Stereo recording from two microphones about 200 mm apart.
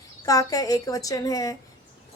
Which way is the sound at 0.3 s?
15° left (ahead or behind).